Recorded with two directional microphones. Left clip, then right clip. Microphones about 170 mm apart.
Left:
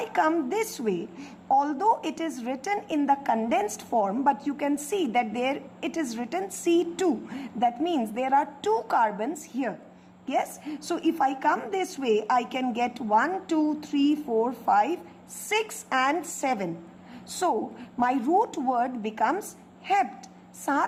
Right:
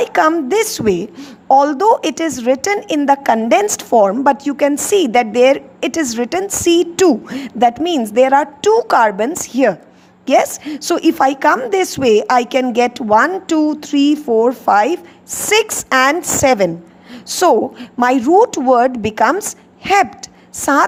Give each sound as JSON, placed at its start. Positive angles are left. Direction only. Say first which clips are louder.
{"t": 0.0, "sound": "a woman's voice", "louder": "right 12 dB", "side_deg": -40}